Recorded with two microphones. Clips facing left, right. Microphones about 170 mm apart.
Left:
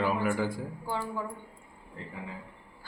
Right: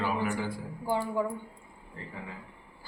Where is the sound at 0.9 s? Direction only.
15° right (ahead or behind).